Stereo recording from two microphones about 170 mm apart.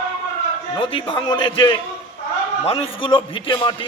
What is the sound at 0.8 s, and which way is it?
A man's voice, 30° left (ahead or behind).